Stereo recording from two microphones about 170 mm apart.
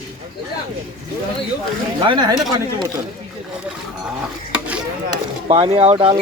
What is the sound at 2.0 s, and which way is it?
Speech, 25° right (ahead or behind).